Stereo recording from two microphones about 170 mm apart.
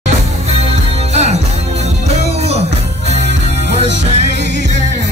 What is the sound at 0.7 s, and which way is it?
Music, 40° right (ahead or behind).